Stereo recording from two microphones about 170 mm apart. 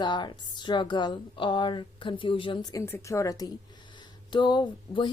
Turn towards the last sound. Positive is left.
turn(degrees=30)  # may be behind; listen again after turning